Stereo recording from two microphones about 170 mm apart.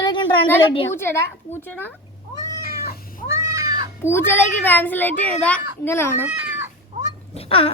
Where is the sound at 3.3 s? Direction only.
15° right (ahead or behind).